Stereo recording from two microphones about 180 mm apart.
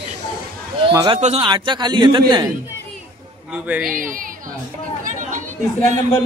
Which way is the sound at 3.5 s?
10° right (ahead or behind).